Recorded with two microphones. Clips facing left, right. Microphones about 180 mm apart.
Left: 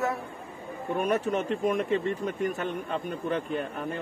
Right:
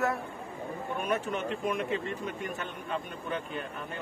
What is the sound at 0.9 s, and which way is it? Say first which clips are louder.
A man's voice: left 6 dB; 40° left (ahead or behind).